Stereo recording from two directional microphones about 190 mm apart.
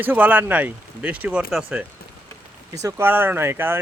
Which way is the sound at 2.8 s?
10° right (ahead or behind).